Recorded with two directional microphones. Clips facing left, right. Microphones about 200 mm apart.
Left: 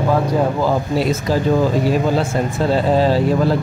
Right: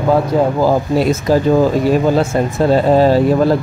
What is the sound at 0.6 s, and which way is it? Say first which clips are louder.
Speech: right 4 dB; 40° right (ahead or behind).